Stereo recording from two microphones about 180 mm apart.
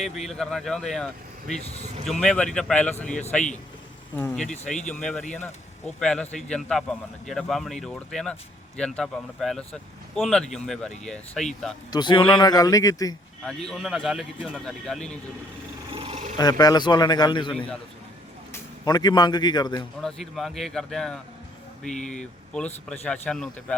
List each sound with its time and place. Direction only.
0.0 s speech: centre (ahead or behind)
11.9 s a man's voice: 25° left (ahead or behind)
13.4 s speech: 5° left (ahead or behind)
15.9 s a sound: 30° right (ahead or behind)
16.4 s a man's voice: 20° left (ahead or behind)
17.5 s a man's voice: 5° left (ahead or behind)
18.5 s a man's voice: 20° left (ahead or behind)
20.0 s speech: centre (ahead or behind)